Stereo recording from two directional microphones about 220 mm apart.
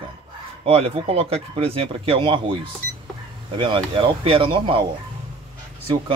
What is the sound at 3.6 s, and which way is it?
Speech, 25° right (ahead or behind).